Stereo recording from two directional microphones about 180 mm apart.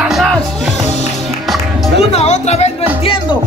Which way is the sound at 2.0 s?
35° left (ahead or behind).